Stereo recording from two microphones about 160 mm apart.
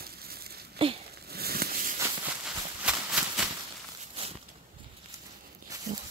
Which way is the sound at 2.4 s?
5° right (ahead or behind).